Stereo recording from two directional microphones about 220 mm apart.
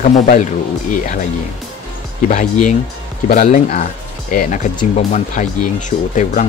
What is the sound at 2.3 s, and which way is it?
Speech, 35° left (ahead or behind).